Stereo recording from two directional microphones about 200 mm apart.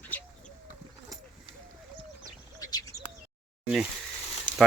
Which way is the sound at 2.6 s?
20° left (ahead or behind).